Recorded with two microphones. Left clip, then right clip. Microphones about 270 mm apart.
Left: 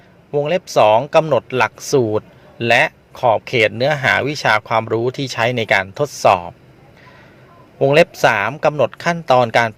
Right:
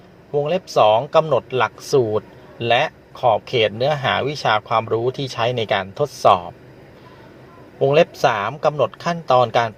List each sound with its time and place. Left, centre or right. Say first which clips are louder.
0.3 s speech: left 2 dB; left
7.8 s speech: left 3 dB; left